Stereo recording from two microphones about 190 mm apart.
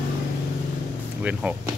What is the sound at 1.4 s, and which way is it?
Speech, 5° right (ahead or behind).